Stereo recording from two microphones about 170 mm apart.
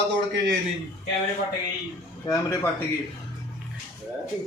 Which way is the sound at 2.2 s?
20° left (ahead or behind).